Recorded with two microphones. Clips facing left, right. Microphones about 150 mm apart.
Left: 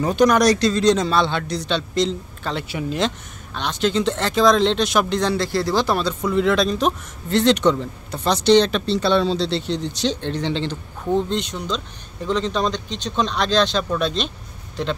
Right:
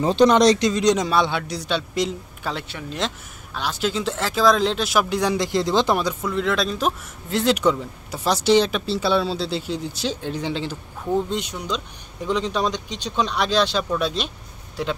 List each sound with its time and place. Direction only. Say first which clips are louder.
0.0 s speech: right 1 dB; 25° right (ahead or behind); by 2.6 s 10° right (ahead or behind)
2.7 s speech: left 5 dB; centre (ahead or behind); by 6.1 s 15° right (ahead or behind)
6.2 s speech: left 4 dB; centre (ahead or behind)